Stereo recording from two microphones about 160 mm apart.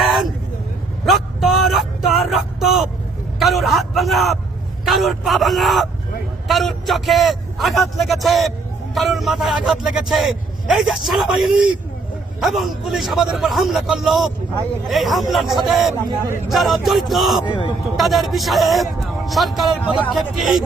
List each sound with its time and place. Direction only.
0.0 s vehicle: centre (ahead or behind)
3.3 s a sound: centre (ahead or behind)
4.9 s speech: centre (ahead or behind)
16.0 s speech: 20° right (ahead or behind)
16.5 s speech: centre (ahead or behind)
17.4 s a man's voice: 30° left (ahead or behind)
17.9 s speech: centre (ahead or behind)